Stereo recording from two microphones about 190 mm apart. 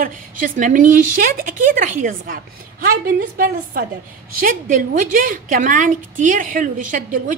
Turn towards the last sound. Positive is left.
turn(degrees=-45)  # may be behind; listen again after turning